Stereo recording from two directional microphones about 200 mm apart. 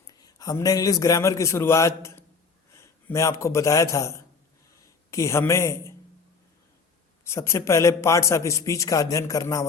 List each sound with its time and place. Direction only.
0.1 s a man's voice: 20° left (ahead or behind)
7.3 s a man's voice: 15° left (ahead or behind)